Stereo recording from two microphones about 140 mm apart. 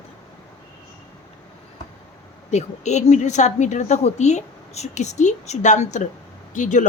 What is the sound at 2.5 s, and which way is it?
A woman's voice, 55° left (ahead or behind).